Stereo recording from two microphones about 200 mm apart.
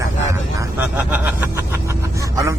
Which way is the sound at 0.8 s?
10° right (ahead or behind).